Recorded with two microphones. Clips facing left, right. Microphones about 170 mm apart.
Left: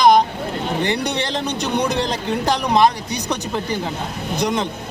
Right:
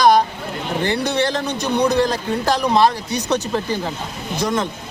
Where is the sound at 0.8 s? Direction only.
20° left (ahead or behind).